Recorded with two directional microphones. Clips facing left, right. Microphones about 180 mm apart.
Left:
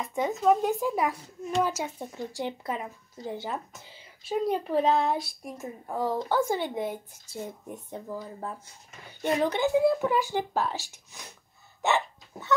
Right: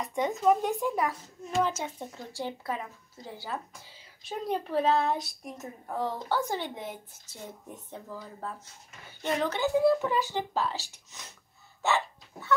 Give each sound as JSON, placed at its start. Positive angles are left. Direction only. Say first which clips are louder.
{"t": 0.0, "sound": "speech", "louder": "left 1 dB", "side_deg": 5}
{"t": 11.8, "sound": "dog", "louder": "left 2 dB", "side_deg": 20}